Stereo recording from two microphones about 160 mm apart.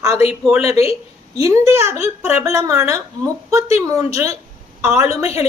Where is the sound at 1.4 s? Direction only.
20° right (ahead or behind).